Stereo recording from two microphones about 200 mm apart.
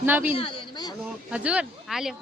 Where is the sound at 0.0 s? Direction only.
10° right (ahead or behind).